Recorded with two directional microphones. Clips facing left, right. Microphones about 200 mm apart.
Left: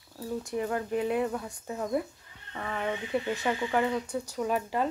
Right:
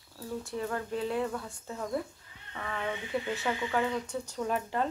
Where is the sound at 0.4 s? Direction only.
15° left (ahead or behind).